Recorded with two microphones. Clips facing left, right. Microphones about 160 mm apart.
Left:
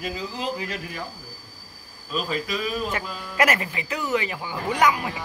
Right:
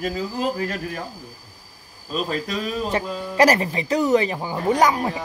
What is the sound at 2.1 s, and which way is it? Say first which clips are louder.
Speech: right 2 dB; 40° right (ahead or behind).